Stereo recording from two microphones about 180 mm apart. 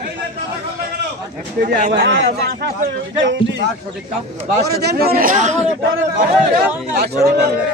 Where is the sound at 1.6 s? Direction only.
65° right (ahead or behind).